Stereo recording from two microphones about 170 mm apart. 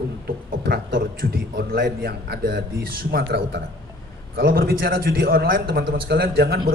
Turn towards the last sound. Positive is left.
turn(degrees=-65)  # may be behind; listen again after turning